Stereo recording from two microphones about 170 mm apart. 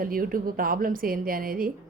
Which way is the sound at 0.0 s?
55° right (ahead or behind).